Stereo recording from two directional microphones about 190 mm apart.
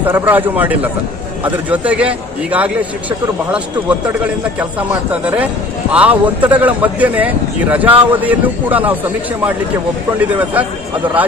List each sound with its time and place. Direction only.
0.0 s a man's voice: 10° right (ahead or behind)